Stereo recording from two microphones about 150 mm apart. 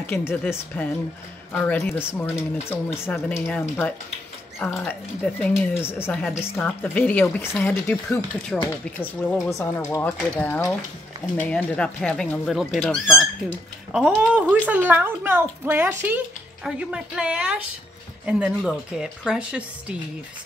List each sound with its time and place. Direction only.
0.0 s a woman's voice: 15° left (ahead or behind); by 13.3 s centre (ahead or behind)
14.5 s speech: 10° right (ahead or behind)